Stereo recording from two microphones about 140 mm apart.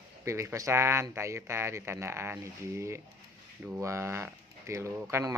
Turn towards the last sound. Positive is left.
turn(degrees=-20)  # may be behind; listen again after turning